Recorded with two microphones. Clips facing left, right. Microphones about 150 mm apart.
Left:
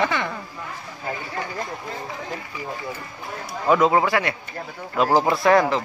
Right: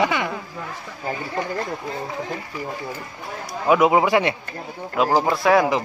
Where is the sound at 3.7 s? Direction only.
15° right (ahead or behind).